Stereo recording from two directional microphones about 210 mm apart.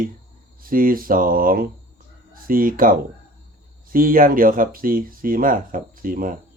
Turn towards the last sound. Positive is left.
turn(degrees=-40)  # may be behind; listen again after turning